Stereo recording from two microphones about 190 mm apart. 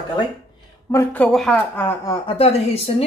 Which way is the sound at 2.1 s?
30° left (ahead or behind).